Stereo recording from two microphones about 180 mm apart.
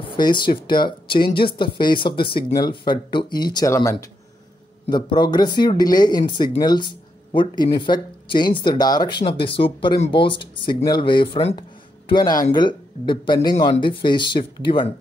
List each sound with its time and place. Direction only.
0.1 s speech: 25° left (ahead or behind)